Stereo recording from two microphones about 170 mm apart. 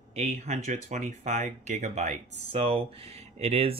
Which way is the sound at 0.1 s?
40° right (ahead or behind).